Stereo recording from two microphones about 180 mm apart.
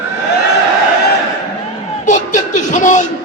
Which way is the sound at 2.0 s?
45° left (ahead or behind).